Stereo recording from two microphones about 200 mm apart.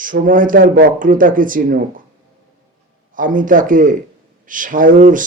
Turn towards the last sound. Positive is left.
turn(degrees=-40)  # may be behind; listen again after turning